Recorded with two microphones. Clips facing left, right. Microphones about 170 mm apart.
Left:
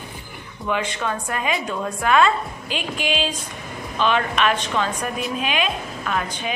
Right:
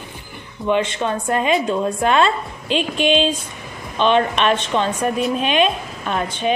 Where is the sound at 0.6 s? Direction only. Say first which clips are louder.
Right 5 dB; 25° right (ahead or behind).